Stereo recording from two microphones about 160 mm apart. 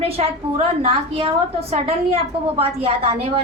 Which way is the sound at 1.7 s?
35° right (ahead or behind).